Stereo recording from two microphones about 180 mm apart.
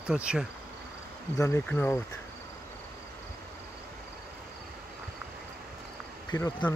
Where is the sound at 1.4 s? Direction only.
10° left (ahead or behind).